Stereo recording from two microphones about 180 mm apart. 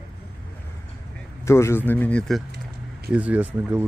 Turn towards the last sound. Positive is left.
turn(degrees=-10)  # may be behind; listen again after turning